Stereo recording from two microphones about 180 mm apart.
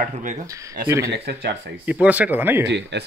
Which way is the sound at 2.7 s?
70° right (ahead or behind).